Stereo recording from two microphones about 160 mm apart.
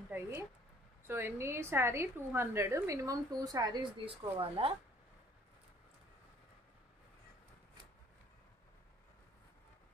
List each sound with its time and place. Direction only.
0.1 s a woman's voice: 15° right (ahead or behind); by 4.7 s 35° right (ahead or behind)